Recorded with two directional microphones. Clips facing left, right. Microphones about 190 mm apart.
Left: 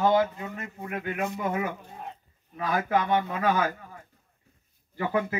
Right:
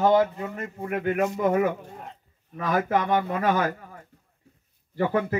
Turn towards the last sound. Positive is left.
turn(degrees=-40)  # may be behind; listen again after turning